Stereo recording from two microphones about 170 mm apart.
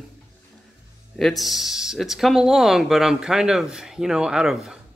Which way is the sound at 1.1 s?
Centre (ahead or behind).